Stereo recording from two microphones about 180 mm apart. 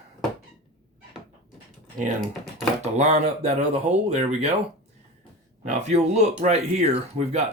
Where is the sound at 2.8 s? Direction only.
40° right (ahead or behind).